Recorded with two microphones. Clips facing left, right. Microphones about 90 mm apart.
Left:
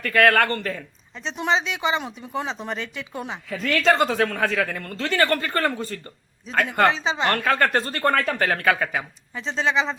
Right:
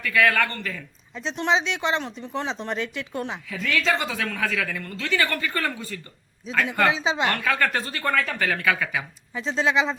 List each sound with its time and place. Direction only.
0.0 s speech: 50° left (ahead or behind)
1.2 s speech: centre (ahead or behind)
3.5 s speech: 45° left (ahead or behind)
4.4 s speech: 35° left (ahead or behind)
4.8 s speech: 45° left (ahead or behind)
6.9 s speech: centre (ahead or behind)
7.3 s speech: 40° left (ahead or behind)
9.3 s speech: centre (ahead or behind)